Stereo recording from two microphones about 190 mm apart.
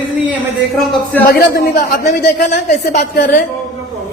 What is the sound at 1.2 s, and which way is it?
Speech, 50° left (ahead or behind).